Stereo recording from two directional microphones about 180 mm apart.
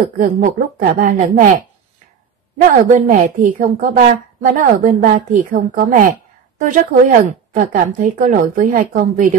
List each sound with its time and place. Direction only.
0.2 s a woman's voice: 50° right (ahead or behind)
2.9 s a woman's voice: 45° right (ahead or behind)